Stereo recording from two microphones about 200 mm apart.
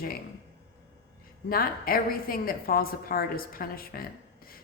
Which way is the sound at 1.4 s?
45° left (ahead or behind).